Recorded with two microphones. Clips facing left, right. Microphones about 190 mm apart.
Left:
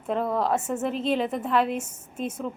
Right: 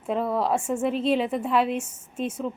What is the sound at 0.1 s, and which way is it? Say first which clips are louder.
A woman's voice: even; 5° right (ahead or behind).